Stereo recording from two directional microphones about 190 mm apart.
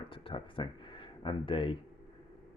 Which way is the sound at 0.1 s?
25° left (ahead or behind).